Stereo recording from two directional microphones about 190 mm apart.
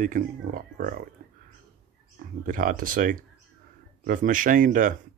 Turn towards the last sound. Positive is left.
turn(degrees=-45)  # may be behind; listen again after turning